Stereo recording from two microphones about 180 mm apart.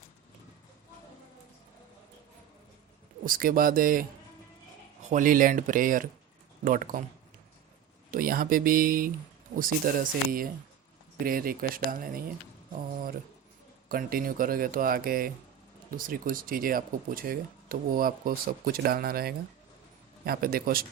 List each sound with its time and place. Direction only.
3.2 s speech: 50° right (ahead or behind)
5.0 s speech: 45° right (ahead or behind)
8.1 s speech: 55° right (ahead or behind)
13.8 s a man's voice: 55° right (ahead or behind)